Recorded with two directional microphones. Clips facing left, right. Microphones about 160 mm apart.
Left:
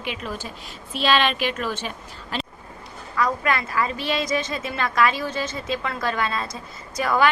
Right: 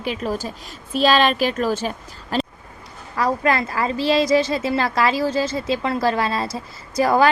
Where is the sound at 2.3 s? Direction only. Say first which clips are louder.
Right 8 dB; 40° right (ahead or behind).